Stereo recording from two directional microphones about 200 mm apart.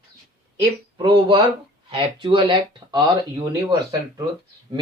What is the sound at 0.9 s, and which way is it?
Speech, 25° right (ahead or behind).